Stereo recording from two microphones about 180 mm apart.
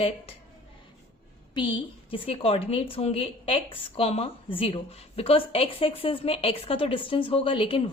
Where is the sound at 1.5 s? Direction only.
30° left (ahead or behind).